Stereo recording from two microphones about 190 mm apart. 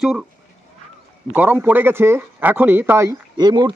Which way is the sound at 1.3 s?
10° right (ahead or behind).